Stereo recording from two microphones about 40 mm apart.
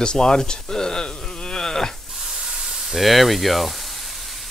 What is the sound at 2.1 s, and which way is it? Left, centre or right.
Spray, centre.